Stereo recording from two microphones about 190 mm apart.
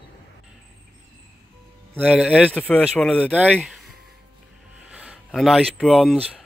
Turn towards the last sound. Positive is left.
turn(degrees=0)  # may be behind; listen again after turning